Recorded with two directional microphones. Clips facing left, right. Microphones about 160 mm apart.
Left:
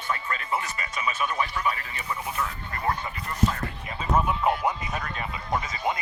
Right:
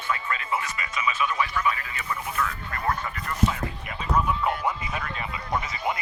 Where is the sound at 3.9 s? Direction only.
30° left (ahead or behind).